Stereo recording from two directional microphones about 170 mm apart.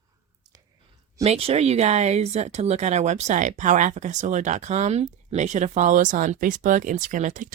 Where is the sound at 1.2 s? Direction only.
35° right (ahead or behind).